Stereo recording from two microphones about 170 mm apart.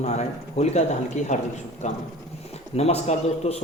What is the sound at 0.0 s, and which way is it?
A man's voice, 40° left (ahead or behind).